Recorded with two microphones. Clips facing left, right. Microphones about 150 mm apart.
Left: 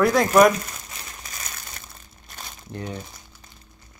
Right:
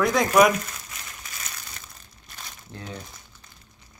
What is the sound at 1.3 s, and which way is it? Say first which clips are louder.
Crumpling: left 2 dB; 40° left (ahead or behind).